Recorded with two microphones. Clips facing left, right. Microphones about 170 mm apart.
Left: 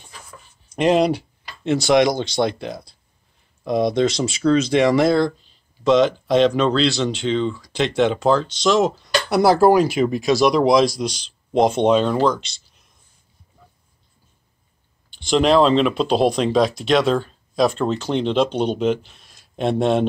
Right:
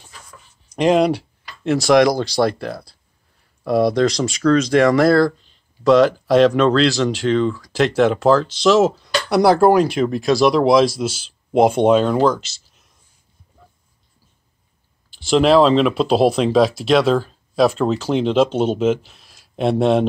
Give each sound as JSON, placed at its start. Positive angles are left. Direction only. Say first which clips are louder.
{"t": 0.1, "sound": "a sound", "louder": "left 3 dB", "side_deg": 5}
{"t": 1.6, "sound": "speech", "louder": "right 2 dB", "side_deg": 0}
{"t": 2.2, "sound": "speech", "louder": "right 3 dB", "side_deg": 25}
{"t": 3.6, "sound": "speech", "louder": "right 2 dB", "side_deg": -5}
{"t": 15.0, "sound": "speech", "louder": "right 2 dB", "side_deg": -5}